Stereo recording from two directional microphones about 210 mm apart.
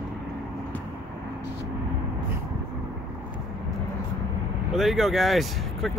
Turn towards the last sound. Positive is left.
turn(degrees=0)  # may be behind; listen again after turning